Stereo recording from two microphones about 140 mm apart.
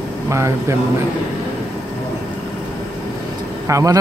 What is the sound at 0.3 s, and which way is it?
Speech, 20° right (ahead or behind).